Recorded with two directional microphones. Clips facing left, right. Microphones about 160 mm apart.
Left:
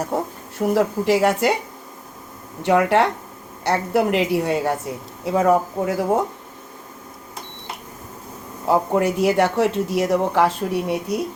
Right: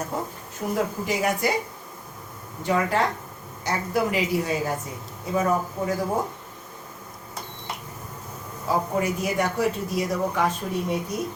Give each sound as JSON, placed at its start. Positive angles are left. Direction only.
{"t": 0.1, "sound": "a sound", "side_deg": 65}
{"t": 0.7, "sound": "speech", "side_deg": 75}
{"t": 2.6, "sound": "a woman's voice", "side_deg": 70}
{"t": 8.6, "sound": "speech", "side_deg": 65}